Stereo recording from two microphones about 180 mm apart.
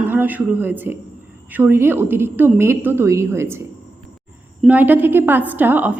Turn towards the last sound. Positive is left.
turn(degrees=-10)  # may be behind; listen again after turning